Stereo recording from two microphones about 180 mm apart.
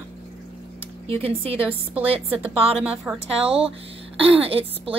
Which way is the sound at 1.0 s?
35° right (ahead or behind).